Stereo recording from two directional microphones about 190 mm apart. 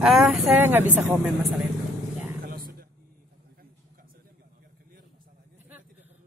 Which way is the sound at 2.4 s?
50° right (ahead or behind).